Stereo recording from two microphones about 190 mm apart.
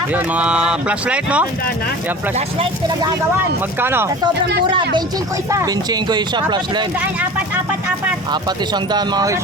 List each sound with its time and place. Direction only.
0.1 s speech: 10° right (ahead or behind)
3.8 s speech: 10° right (ahead or behind)
5.5 s speech: 20° right (ahead or behind)
7.0 s speech: 10° right (ahead or behind)
8.3 s speech: 20° right (ahead or behind)